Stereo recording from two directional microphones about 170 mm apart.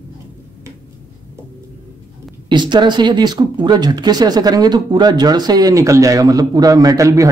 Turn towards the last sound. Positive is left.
turn(degrees=-20)  # may be behind; listen again after turning